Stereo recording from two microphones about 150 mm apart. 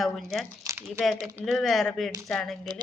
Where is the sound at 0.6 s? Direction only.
20° right (ahead or behind).